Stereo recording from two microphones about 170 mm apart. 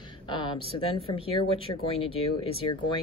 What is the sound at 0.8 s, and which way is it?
Speech, 35° left (ahead or behind).